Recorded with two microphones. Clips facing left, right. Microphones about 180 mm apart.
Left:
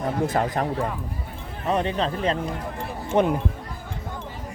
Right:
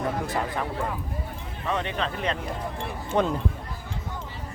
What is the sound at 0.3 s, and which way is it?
Speech, 45° left (ahead or behind).